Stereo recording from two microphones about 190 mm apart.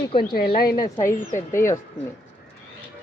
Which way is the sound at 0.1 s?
25° left (ahead or behind).